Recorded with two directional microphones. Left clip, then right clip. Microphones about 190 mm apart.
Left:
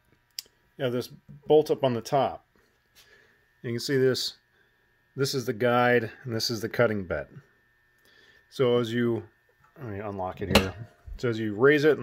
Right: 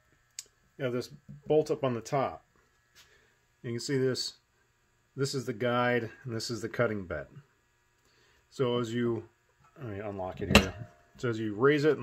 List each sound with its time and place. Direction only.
0.4 s a sound: 25° left (ahead or behind)
1.5 s speech: 25° left (ahead or behind)
3.6 s speech: 25° left (ahead or behind)
9.8 s speech: 10° left (ahead or behind)